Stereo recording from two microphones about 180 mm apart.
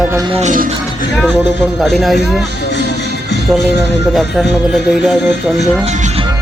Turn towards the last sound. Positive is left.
turn(degrees=0)  # may be behind; listen again after turning